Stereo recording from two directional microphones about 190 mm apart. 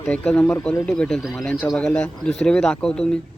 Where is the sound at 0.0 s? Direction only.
5° left (ahead or behind).